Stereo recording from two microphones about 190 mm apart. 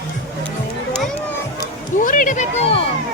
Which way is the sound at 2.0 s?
45° left (ahead or behind).